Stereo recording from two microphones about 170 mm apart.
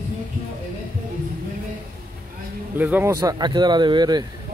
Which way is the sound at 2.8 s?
10° right (ahead or behind).